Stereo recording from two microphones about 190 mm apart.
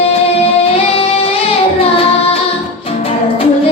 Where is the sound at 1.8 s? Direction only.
30° left (ahead or behind).